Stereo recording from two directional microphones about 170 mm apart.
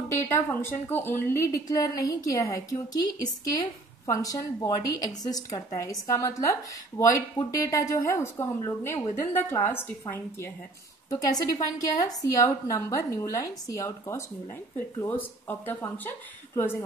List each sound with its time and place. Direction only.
0.1 s a woman's voice: 15° left (ahead or behind)